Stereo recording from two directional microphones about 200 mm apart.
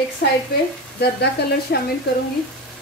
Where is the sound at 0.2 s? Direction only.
55° left (ahead or behind).